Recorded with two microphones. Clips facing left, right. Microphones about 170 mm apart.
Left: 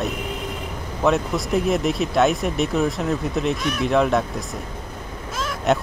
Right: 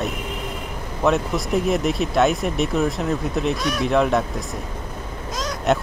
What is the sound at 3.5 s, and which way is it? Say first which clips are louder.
Speech: right 1 dB; 40° right (ahead or behind).